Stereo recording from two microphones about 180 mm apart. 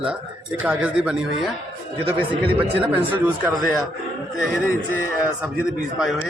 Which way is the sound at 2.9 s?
10° right (ahead or behind).